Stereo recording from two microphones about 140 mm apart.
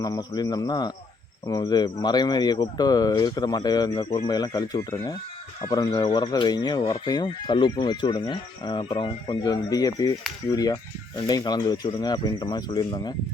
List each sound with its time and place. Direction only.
0.0 s speech: 30° left (ahead or behind)